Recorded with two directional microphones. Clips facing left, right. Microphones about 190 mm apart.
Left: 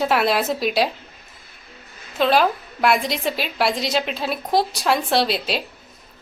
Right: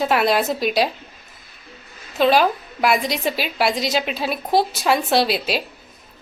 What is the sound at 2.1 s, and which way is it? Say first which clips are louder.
A woman's voice: right 2 dB; centre (ahead or behind).